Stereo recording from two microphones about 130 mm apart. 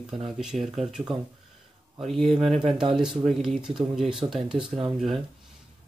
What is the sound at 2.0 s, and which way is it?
Speech, centre (ahead or behind).